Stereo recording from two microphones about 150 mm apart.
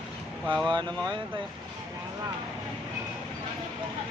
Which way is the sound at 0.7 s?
30° right (ahead or behind).